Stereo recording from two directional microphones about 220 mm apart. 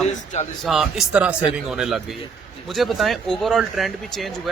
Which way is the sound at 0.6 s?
Centre (ahead or behind).